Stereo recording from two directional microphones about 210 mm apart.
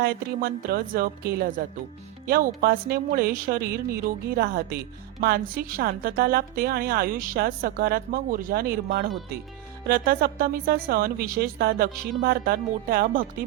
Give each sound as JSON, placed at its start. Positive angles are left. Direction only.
{"t": 0.0, "sound": "a woman's voice", "side_deg": -45}